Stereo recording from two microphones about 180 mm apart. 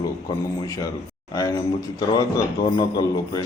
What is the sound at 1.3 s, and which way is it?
A man's voice, 20° left (ahead or behind).